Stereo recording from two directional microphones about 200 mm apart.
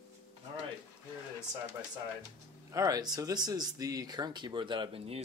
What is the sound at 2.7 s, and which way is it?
Speech, 15° right (ahead or behind).